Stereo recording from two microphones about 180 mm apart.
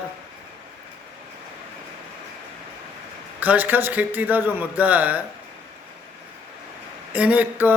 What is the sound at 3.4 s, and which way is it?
Speech, 10° right (ahead or behind).